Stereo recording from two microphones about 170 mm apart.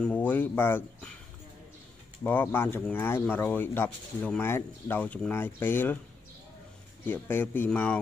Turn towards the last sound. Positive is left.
turn(degrees=10)  # may be behind; listen again after turning